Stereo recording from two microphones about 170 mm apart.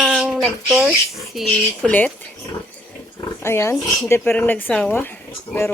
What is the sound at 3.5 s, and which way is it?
Speech, 15° left (ahead or behind).